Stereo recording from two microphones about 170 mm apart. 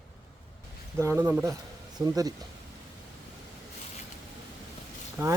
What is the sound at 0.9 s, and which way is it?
Speech, 15° right (ahead or behind).